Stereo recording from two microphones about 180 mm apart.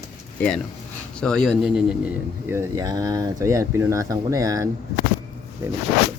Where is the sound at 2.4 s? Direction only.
15° right (ahead or behind).